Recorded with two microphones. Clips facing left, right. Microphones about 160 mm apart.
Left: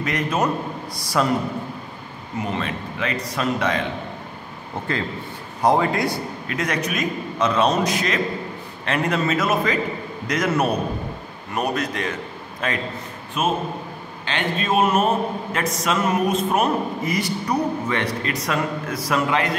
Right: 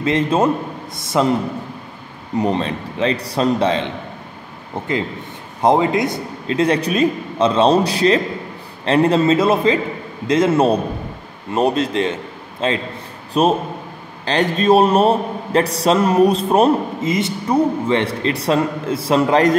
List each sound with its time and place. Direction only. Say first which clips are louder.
0.0 s a man's voice: right 6 dB; 25° right (ahead or behind)
2.3 s a man's voice: right 7 dB; 35° right (ahead or behind)
13.3 s a man's voice: right 7 dB; 35° right (ahead or behind)